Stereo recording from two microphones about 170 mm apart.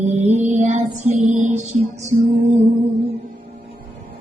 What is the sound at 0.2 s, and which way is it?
Music, 40° right (ahead or behind).